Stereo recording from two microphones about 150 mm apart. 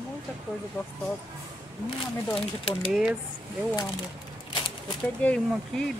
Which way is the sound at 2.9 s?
5° right (ahead or behind).